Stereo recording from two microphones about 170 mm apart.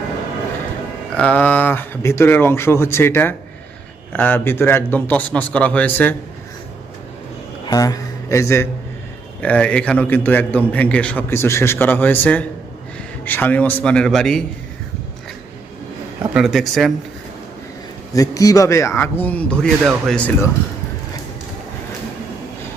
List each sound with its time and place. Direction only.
1.1 s a man's voice: 5° left (ahead or behind)
7.7 s a man's voice: 20° left (ahead or behind); by 14.4 s centre (ahead or behind)
16.3 s speech: centre (ahead or behind)
18.1 s a man's voice: 20° left (ahead or behind)